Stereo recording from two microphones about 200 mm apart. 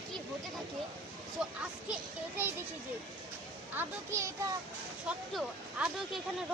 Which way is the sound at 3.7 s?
15° right (ahead or behind).